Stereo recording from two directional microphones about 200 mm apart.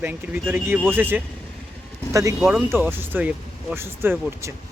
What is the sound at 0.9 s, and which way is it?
Speech, 10° right (ahead or behind).